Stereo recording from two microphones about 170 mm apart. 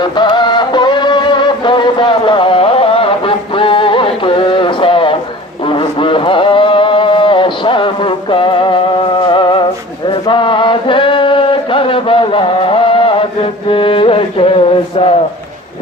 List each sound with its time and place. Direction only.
0.0 s music: 25° left (ahead or behind)
5.6 s a sound: 30° left (ahead or behind)
10.1 s chant: 30° left (ahead or behind)